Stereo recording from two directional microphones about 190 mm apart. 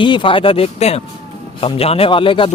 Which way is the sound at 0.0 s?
25° left (ahead or behind).